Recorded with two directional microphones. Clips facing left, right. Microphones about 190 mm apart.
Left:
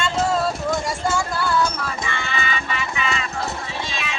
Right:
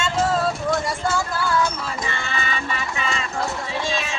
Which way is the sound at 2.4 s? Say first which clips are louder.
Left 1 dB; 40° right (ahead or behind).